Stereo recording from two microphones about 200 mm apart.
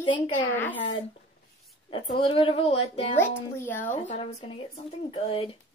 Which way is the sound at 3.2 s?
10° left (ahead or behind).